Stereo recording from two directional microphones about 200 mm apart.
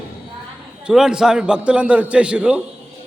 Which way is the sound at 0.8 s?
5° right (ahead or behind).